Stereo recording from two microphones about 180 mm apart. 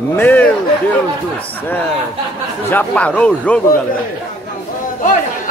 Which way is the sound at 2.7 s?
10° left (ahead or behind).